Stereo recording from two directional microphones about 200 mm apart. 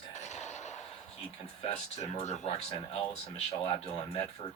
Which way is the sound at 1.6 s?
30° left (ahead or behind).